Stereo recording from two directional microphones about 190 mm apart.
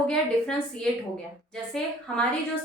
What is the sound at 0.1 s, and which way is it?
Speech, 5° left (ahead or behind).